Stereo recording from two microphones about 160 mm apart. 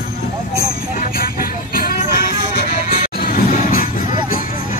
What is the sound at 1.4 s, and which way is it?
Music, 65° left (ahead or behind).